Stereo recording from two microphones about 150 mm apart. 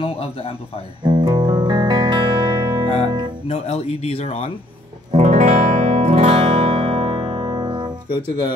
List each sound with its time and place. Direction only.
0.0 s speech: 40° left (ahead or behind)
1.0 s music: 30° right (ahead or behind)
3.0 s speech: 30° right (ahead or behind)
3.4 s speech: 45° left (ahead or behind)
5.1 s music: 50° right (ahead or behind); by 7.9 s 30° right (ahead or behind)
8.1 s speech: 30° left (ahead or behind)